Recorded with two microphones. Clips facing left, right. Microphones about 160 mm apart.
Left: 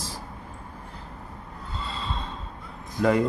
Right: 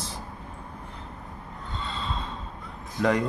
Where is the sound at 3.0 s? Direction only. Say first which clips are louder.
Left 2 dB; 5° left (ahead or behind).